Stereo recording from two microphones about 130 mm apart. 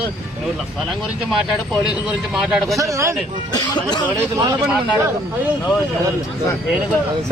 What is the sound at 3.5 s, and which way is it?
Speech, 35° left (ahead or behind).